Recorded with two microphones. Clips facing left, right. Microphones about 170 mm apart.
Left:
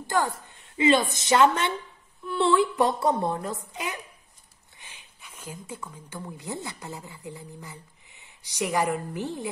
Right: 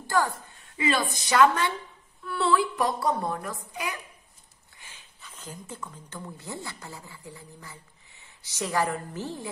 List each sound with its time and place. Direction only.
0.0 s a woman's voice: 20° left (ahead or behind)